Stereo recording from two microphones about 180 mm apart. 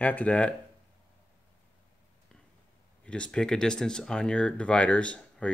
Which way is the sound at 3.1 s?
5° left (ahead or behind).